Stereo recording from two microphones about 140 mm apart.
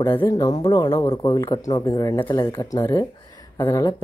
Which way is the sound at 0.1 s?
15° left (ahead or behind).